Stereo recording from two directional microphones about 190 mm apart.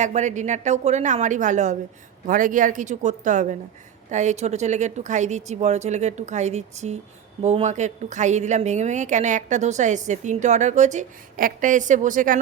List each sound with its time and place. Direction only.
0.0 s a woman's voice: 40° right (ahead or behind)